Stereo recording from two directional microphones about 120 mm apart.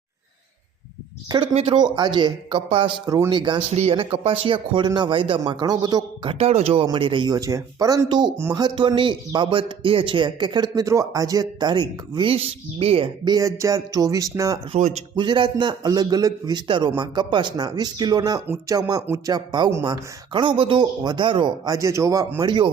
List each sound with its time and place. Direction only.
1.7 s speech: 40° right (ahead or behind)
3.7 s speech: 60° right (ahead or behind); by 6.0 s 35° right (ahead or behind)
6.2 s a man's voice: 60° right (ahead or behind)
6.8 s speech: 40° right (ahead or behind)
13.2 s speech: 30° right (ahead or behind)
14.8 s speech: 80° right
15.1 s speech: 40° right (ahead or behind)
22.4 s speech: 40° right (ahead or behind)